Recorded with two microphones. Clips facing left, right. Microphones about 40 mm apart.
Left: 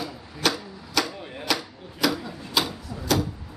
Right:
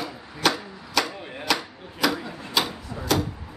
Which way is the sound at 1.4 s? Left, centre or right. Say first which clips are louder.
Right 2 dB; centre.